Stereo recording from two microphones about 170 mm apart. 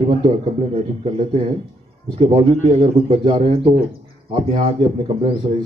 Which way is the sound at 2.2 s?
35° right (ahead or behind).